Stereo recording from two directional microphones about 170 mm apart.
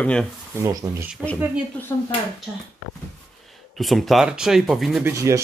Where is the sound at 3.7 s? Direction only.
Centre (ahead or behind).